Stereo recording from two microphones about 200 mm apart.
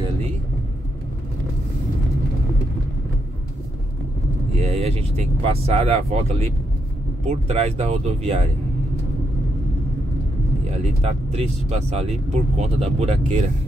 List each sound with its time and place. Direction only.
4.6 s speech: 30° right (ahead or behind)
11.0 s speech: 30° right (ahead or behind)